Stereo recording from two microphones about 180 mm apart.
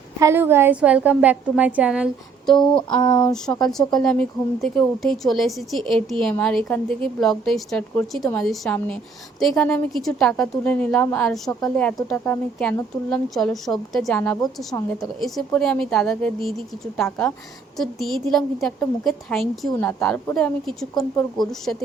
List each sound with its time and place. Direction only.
0.2 s a woman's voice: 15° right (ahead or behind)
2.6 s a sound: 25° left (ahead or behind)
3.6 s a woman's voice: centre (ahead or behind)
15.2 s speech: centre (ahead or behind)
19.7 s a woman's voice: 10° left (ahead or behind)